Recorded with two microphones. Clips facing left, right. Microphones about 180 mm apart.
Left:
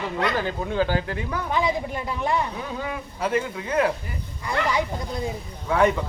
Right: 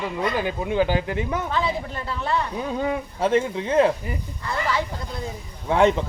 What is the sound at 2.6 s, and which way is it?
Speech, 25° right (ahead or behind).